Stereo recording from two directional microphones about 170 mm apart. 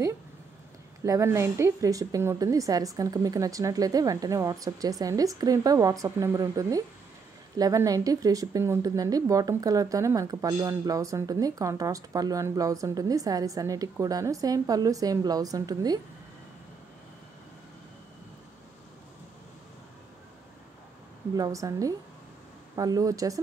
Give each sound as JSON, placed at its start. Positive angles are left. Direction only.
{"t": 1.0, "sound": "speech", "side_deg": -15}
{"t": 21.4, "sound": "speech", "side_deg": -20}